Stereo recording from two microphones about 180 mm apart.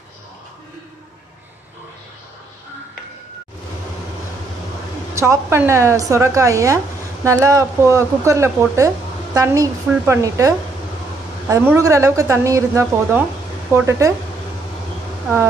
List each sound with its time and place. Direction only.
5.1 s speech: 15° right (ahead or behind)